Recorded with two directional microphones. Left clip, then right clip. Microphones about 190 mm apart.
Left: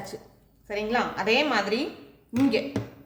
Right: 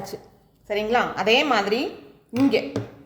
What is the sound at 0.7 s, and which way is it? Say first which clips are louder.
A woman's voice: right 5 dB; 35° right (ahead or behind).